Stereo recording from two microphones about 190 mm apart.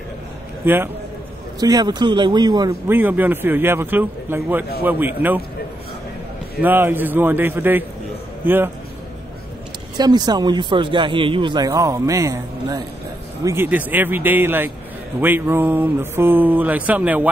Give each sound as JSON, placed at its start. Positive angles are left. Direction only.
{"t": 0.7, "sound": "speech", "side_deg": -10}
{"t": 1.6, "sound": "a man's voice", "side_deg": -20}
{"t": 3.0, "sound": "speech", "side_deg": -10}
{"t": 6.6, "sound": "speech", "side_deg": -10}
{"t": 9.9, "sound": "a man's voice", "side_deg": -20}